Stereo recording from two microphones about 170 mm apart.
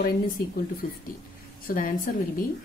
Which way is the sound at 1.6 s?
55° left (ahead or behind).